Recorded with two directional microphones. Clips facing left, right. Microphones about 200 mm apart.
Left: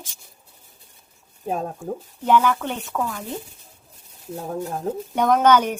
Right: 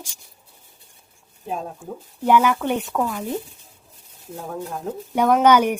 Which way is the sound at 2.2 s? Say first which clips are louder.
Right 2 dB; 10° right (ahead or behind).